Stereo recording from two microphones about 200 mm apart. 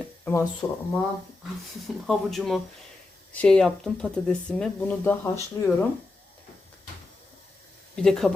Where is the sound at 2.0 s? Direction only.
Centre (ahead or behind).